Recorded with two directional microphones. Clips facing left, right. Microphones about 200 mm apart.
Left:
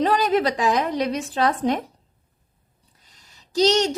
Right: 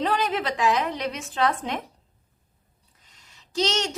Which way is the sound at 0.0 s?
40° left (ahead or behind).